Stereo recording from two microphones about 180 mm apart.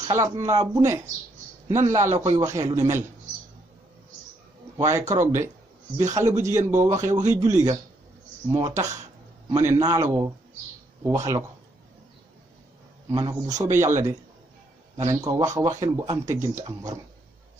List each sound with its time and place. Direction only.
0.1 s speech: 15° right (ahead or behind)
4.7 s speech: 15° right (ahead or behind)
13.1 s speech: 20° right (ahead or behind)